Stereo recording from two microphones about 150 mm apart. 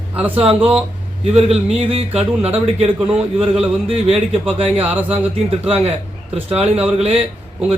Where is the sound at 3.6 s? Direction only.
45° right (ahead or behind).